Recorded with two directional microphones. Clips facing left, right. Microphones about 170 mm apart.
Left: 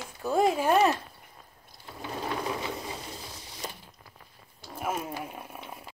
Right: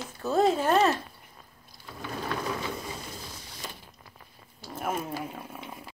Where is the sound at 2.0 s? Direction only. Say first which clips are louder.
Even; 20° left (ahead or behind).